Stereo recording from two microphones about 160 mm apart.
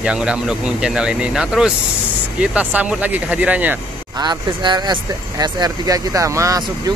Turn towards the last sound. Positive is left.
turn(degrees=-20)  # may be behind; listen again after turning